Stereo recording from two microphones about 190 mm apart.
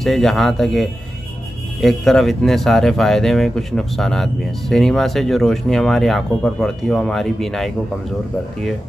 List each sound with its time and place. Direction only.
0.0 s speech: centre (ahead or behind)